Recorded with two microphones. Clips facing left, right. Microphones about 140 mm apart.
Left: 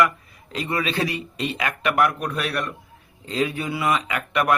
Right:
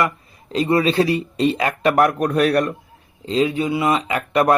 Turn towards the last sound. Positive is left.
turn(degrees=-30)  # may be behind; listen again after turning